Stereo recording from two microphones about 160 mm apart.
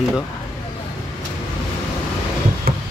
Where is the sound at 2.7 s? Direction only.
70° right (ahead or behind).